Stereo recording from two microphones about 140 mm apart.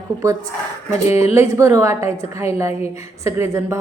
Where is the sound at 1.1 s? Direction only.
50° left (ahead or behind).